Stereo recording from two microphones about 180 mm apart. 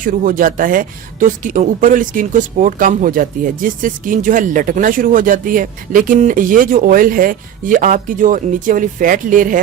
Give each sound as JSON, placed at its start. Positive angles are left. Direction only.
{"t": 0.0, "sound": "speech", "side_deg": -50}